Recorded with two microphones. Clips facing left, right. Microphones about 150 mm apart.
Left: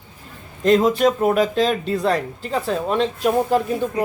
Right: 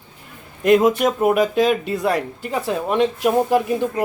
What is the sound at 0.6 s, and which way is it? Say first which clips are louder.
A man's voice: right 1 dB; 10° right (ahead or behind).